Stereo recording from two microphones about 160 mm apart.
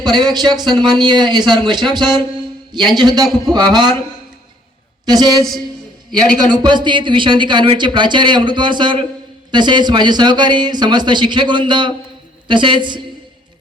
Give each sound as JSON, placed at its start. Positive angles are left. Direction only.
{"t": 0.0, "sound": "speech", "side_deg": -25}
{"t": 5.0, "sound": "speech", "side_deg": -25}
{"t": 6.1, "sound": "a man's voice", "side_deg": 0}
{"t": 6.5, "sound": "speech", "side_deg": -30}